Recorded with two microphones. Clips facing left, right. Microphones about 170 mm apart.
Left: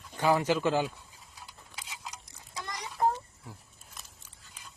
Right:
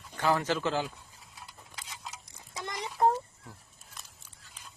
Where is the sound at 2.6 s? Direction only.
20° right (ahead or behind).